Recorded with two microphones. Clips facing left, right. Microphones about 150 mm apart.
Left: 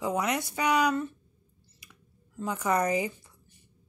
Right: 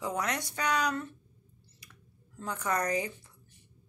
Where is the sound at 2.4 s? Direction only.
10° left (ahead or behind).